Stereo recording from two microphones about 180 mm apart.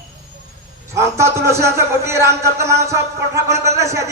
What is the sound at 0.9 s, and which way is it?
Speech, 15° right (ahead or behind).